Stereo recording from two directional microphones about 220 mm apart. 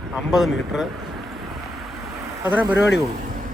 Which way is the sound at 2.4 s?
5° right (ahead or behind).